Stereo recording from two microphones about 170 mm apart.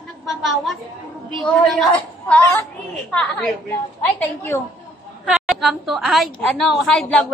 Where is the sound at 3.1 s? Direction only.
5° left (ahead or behind).